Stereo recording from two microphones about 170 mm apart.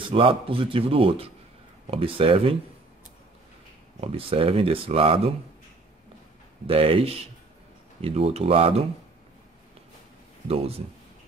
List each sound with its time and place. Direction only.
0.1 s speech: 30° right (ahead or behind)
4.0 s speech: 35° right (ahead or behind)
6.7 s speech: 35° right (ahead or behind)